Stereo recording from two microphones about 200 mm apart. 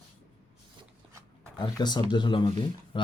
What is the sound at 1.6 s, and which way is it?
Speech, 20° left (ahead or behind).